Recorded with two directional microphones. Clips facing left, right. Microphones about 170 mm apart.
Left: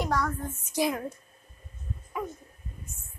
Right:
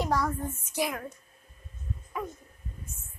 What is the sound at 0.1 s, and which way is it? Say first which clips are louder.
Speech: right 1 dB; 5° right (ahead or behind).